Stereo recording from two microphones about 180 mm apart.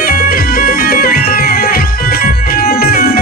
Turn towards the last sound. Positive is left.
turn(degrees=55)  # may be behind; listen again after turning